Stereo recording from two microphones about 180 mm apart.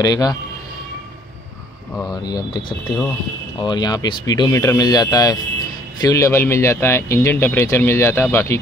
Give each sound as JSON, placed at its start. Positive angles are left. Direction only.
{"t": 0.0, "sound": "speech", "side_deg": 20}
{"t": 2.0, "sound": "speech", "side_deg": 20}
{"t": 3.6, "sound": "speech", "side_deg": 20}